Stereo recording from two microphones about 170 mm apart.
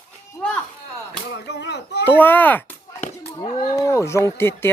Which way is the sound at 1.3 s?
85° left.